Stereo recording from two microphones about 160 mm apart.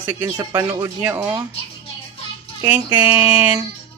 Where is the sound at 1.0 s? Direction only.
10° right (ahead or behind).